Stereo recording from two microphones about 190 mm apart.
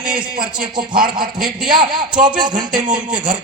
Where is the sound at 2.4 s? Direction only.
25° right (ahead or behind).